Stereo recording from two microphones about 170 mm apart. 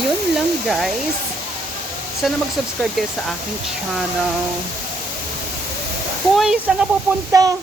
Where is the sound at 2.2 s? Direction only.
Centre (ahead or behind).